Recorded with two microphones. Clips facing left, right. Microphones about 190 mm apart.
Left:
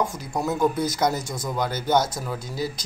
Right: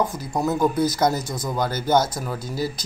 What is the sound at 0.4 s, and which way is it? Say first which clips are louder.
Speech: right 2 dB; centre (ahead or behind).